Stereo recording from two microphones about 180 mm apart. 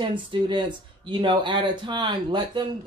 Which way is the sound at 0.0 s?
25° right (ahead or behind).